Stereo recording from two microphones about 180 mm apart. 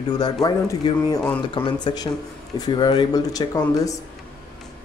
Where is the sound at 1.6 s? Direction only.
25° left (ahead or behind).